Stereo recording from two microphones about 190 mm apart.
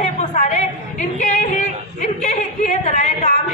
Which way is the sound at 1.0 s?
40° left (ahead or behind).